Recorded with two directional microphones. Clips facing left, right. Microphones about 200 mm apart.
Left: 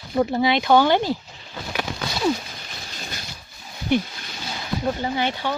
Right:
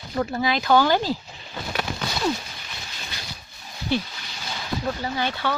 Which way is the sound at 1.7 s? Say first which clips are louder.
Left 1 dB; 10° left (ahead or behind).